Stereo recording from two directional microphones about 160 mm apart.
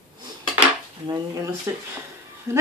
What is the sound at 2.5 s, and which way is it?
Speech, 15° right (ahead or behind).